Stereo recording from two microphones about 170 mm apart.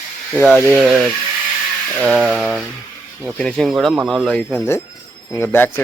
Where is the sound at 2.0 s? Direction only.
Centre (ahead or behind).